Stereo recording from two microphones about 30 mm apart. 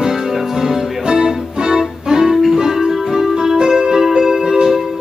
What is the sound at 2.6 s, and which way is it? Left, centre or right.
Music, centre.